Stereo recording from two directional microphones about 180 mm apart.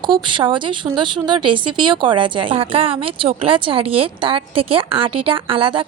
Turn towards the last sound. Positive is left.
turn(degrees=-30)  # may be behind; listen again after turning